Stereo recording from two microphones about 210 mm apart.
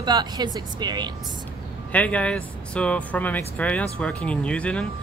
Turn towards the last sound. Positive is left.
turn(degrees=5)  # may be behind; listen again after turning